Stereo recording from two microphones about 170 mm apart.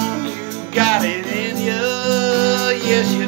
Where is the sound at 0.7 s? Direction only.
5° right (ahead or behind).